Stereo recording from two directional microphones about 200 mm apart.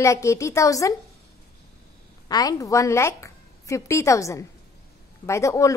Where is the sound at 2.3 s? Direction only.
20° left (ahead or behind).